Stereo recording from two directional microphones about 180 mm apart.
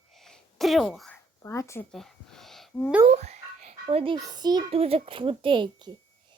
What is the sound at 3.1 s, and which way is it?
A child's voice, 40° right (ahead or behind).